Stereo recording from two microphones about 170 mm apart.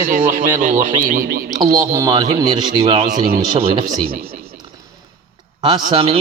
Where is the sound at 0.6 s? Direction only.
50° right (ahead or behind).